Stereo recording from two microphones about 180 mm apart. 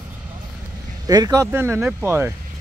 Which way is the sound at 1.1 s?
20° right (ahead or behind).